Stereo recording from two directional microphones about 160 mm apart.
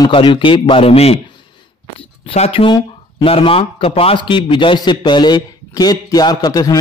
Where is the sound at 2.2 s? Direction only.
40° left (ahead or behind); by 6.8 s 25° left (ahead or behind).